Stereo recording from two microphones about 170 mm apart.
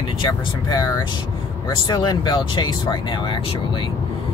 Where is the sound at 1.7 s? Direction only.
25° left (ahead or behind).